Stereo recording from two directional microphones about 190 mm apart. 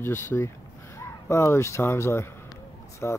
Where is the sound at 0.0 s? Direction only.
10° left (ahead or behind).